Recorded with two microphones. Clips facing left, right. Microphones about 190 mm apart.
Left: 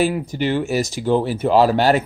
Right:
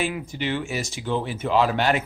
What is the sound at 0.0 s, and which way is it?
Speech, 40° left (ahead or behind).